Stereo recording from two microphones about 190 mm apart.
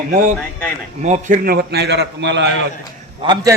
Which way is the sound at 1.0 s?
40° right (ahead or behind).